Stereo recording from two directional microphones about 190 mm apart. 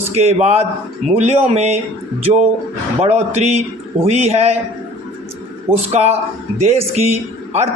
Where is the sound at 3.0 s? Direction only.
35° right (ahead or behind).